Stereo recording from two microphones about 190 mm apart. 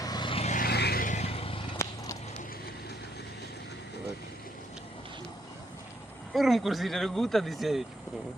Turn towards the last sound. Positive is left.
turn(degrees=0)  # may be behind; listen again after turning